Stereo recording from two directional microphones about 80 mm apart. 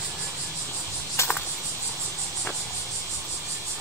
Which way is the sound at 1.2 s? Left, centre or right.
Left.